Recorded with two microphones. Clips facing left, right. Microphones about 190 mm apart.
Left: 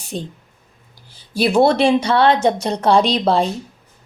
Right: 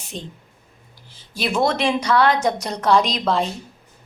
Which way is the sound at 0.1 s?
40° left (ahead or behind).